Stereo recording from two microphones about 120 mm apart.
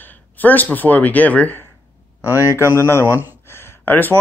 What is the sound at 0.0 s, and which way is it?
Speech, 15° left (ahead or behind).